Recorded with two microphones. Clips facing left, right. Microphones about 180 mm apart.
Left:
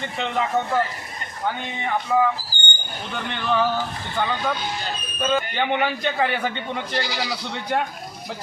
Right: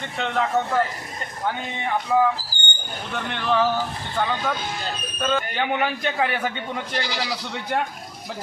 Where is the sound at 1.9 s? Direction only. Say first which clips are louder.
Even; centre (ahead or behind).